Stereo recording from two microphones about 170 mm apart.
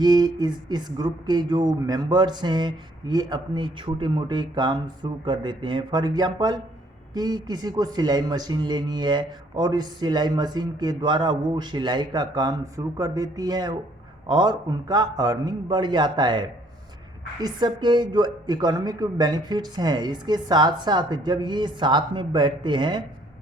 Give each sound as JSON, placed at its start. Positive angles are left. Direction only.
{"t": 0.0, "sound": "speech", "side_deg": -25}